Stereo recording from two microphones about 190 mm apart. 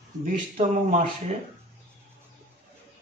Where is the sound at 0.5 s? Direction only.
40° right (ahead or behind).